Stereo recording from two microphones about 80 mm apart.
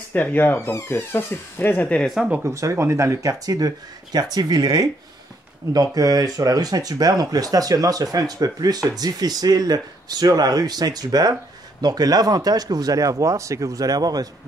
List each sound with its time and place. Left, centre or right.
0.1 s speech: left
2.0 s speech: centre
2.4 s speech: right